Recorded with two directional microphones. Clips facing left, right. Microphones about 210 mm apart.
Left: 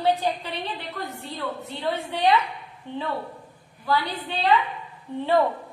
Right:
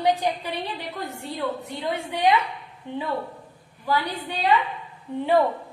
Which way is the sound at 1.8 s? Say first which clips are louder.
Even; 15° right (ahead or behind).